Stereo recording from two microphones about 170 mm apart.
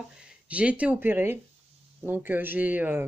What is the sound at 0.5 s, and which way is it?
Speech, 5° right (ahead or behind).